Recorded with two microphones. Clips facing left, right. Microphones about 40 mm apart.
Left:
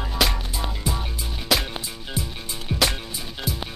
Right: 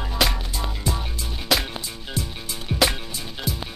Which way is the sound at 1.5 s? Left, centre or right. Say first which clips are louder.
Even; centre.